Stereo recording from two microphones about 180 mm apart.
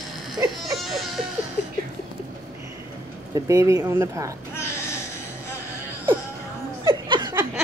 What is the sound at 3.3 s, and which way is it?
Speech, 15° right (ahead or behind).